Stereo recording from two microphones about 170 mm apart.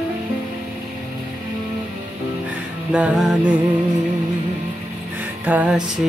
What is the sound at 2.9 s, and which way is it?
Music, 5° right (ahead or behind).